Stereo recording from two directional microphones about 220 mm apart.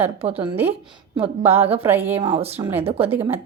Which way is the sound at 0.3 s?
10° right (ahead or behind).